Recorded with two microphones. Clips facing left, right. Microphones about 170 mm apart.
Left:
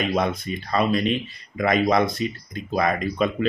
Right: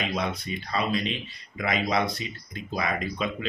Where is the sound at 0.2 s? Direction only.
50° left (ahead or behind).